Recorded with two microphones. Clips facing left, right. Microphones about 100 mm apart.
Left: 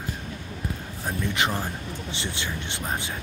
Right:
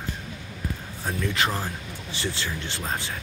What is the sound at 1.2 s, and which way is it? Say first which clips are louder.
Speech: even; 20° left (ahead or behind).